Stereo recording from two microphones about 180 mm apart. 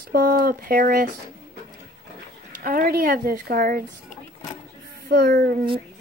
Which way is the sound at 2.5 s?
55° right (ahead or behind).